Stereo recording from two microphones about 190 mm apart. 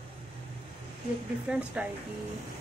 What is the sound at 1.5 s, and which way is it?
Speech, 5° right (ahead or behind).